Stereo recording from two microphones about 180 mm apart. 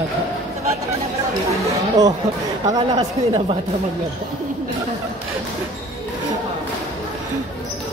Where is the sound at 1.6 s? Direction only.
20° right (ahead or behind).